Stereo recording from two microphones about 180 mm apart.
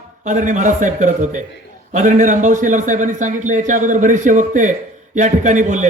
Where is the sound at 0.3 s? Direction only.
45° right (ahead or behind).